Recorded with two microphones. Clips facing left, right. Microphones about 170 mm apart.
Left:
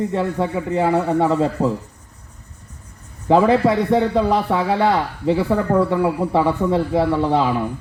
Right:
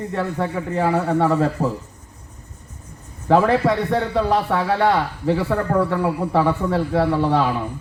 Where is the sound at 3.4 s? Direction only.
5° left (ahead or behind).